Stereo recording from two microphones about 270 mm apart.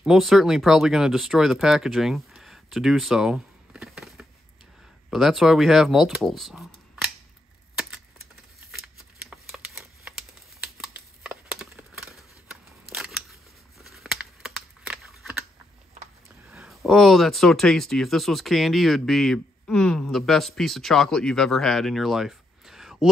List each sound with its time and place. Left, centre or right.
0.0 s speech: centre
8.7 s shuffling cards: centre
10.6 s a sound: centre
12.9 s scissors: centre
13.8 s a sound: centre
16.4 s speech: centre